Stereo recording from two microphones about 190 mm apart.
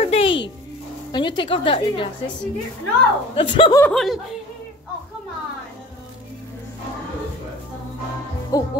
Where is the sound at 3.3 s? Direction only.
30° left (ahead or behind).